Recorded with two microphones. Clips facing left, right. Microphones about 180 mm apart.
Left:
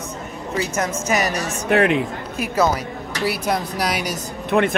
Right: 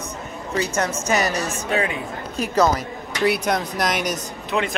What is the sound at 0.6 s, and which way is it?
Speech, 10° left (ahead or behind).